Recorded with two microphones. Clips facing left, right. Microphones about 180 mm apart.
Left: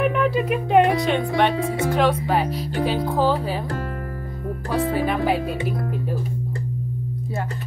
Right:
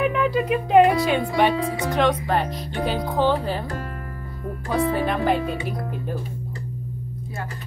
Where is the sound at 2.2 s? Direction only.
5° left (ahead or behind).